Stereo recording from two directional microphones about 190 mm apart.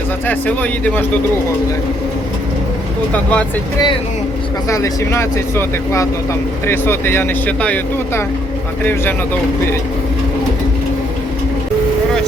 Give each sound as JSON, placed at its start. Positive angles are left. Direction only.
{"t": 0.3, "sound": "speech", "side_deg": 10}
{"t": 3.1, "sound": "speech", "side_deg": 5}
{"t": 4.7, "sound": "speech", "side_deg": 15}